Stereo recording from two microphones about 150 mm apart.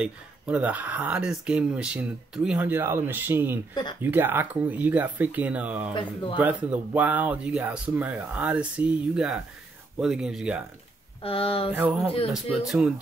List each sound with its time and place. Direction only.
0.0 s speech: 10° right (ahead or behind)
11.2 s speech: 40° left (ahead or behind)
11.7 s speech: 10° right (ahead or behind)